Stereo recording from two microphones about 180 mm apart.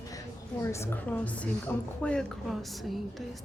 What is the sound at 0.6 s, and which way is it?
A woman's voice, 15° left (ahead or behind).